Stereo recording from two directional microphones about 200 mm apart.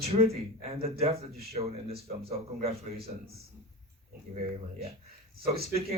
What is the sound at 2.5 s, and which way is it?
Speech, 35° right (ahead or behind).